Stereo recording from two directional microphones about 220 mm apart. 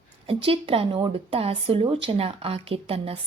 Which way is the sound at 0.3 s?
25° right (ahead or behind).